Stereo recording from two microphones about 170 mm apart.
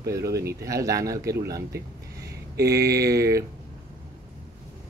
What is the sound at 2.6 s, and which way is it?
Speech, 20° right (ahead or behind).